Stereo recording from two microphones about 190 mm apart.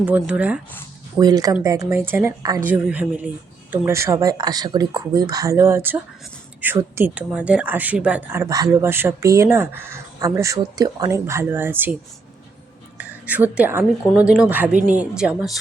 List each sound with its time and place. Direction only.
0.2 s speech: 5° right (ahead or behind)
1.2 s speech: 20° right (ahead or behind)
13.0 s a sound: 10° right (ahead or behind)
13.6 s speech: 10° right (ahead or behind)